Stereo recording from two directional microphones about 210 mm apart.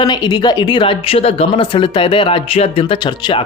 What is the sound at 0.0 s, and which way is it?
Speech, 20° left (ahead or behind).